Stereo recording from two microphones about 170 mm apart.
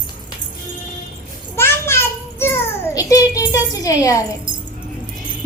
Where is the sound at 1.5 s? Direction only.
15° left (ahead or behind).